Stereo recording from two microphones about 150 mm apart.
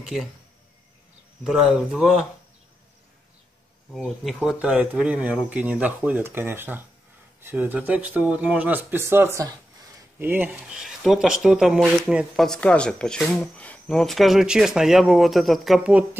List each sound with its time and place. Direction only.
1.4 s speech: centre (ahead or behind)
3.9 s speech: centre (ahead or behind)